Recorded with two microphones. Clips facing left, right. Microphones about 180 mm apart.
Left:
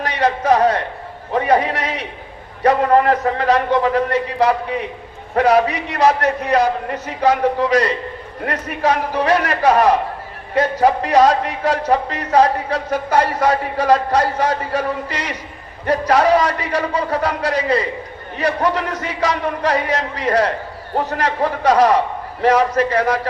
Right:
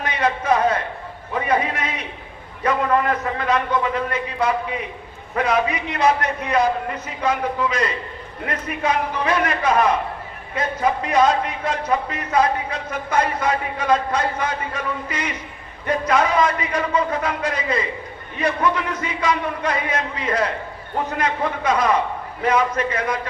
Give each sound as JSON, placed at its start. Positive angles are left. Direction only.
{"t": 0.0, "sound": "a man's voice", "side_deg": 40}